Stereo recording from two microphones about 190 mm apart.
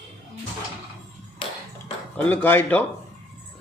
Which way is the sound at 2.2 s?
10° left (ahead or behind).